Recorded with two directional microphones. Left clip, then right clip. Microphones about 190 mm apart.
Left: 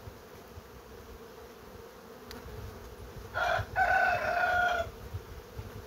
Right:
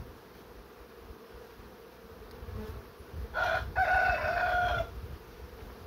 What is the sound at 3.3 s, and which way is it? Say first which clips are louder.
Chicken: even; 10° right (ahead or behind).